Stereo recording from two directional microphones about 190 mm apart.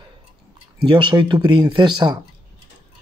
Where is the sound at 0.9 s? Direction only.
25° right (ahead or behind).